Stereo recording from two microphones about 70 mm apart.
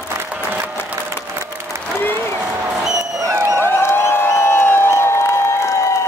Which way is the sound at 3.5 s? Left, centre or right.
Left.